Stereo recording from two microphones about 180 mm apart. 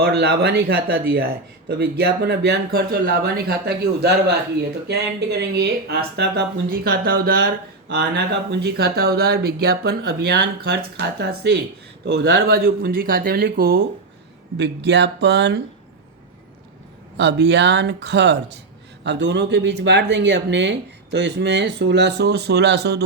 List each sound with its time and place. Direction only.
0.0 s speech: 65° right (ahead or behind)
5.4 s speech: 65° right (ahead or behind)
14.6 s speech: 75° right (ahead or behind)
17.2 s speech: 70° right (ahead or behind)